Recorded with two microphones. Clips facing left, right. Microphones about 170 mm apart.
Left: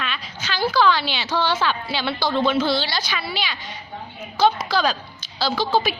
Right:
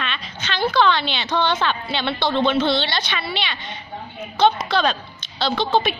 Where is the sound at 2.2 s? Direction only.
25° right (ahead or behind).